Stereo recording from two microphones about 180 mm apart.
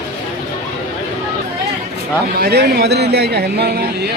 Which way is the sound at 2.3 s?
60° right (ahead or behind).